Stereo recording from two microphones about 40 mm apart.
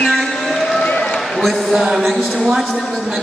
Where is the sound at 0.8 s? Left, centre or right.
Left.